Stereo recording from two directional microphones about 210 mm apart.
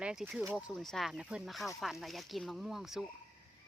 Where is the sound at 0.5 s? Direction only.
Centre (ahead or behind).